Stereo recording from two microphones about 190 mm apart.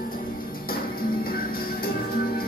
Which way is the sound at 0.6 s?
50° left (ahead or behind).